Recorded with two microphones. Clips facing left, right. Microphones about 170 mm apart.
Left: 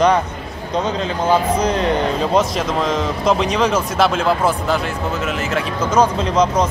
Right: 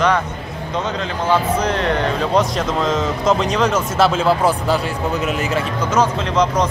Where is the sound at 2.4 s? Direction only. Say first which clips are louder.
Even; 5° left (ahead or behind).